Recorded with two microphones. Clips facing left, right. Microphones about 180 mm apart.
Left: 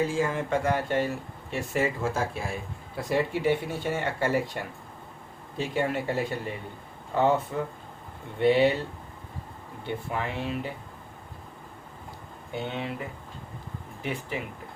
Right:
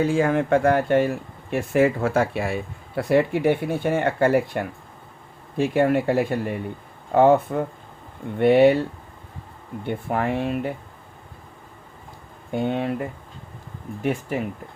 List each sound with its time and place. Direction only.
0.0 s speech: 65° right (ahead or behind)
9.8 s speech: 55° right (ahead or behind)
12.5 s speech: 50° right (ahead or behind)